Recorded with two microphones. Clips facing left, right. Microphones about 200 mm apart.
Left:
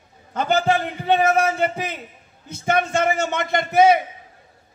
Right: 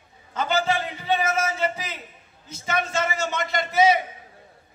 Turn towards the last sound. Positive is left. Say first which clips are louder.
# left 4 dB
turn(degrees=55)  # may be behind; listen again after turning